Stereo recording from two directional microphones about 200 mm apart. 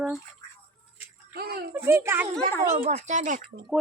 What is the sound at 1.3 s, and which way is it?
Speech, 50° right (ahead or behind).